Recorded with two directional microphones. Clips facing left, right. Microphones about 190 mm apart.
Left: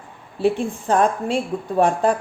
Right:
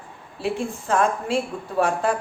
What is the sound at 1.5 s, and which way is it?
Speech, 35° left (ahead or behind).